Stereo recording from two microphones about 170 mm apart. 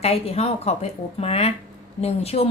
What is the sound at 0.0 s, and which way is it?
A woman's voice, 35° left (ahead or behind).